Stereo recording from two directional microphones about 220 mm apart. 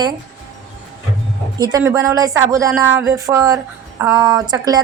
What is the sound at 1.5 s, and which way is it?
Speech, 15° right (ahead or behind).